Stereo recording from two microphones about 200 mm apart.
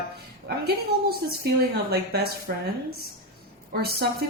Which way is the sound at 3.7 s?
50° right (ahead or behind).